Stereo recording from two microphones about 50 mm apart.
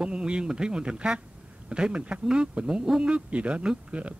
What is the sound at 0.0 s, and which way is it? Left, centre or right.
A man's voice, centre.